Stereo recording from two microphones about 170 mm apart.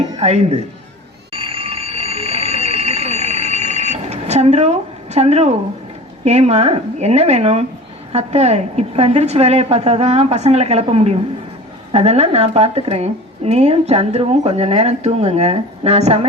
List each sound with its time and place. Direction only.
0.2 s a woman's voice: 40° right (ahead or behind)
1.3 s a sound: 30° right (ahead or behind)
6.2 s a woman's voice: 40° right (ahead or behind)